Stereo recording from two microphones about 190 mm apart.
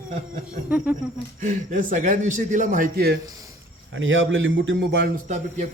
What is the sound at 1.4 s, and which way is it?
A man's voice, 45° right (ahead or behind).